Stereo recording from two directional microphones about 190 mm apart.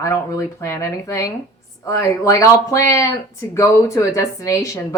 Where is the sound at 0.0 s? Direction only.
15° left (ahead or behind).